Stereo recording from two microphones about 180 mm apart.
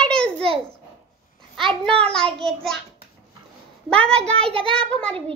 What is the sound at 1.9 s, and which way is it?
Speech, 5° left (ahead or behind).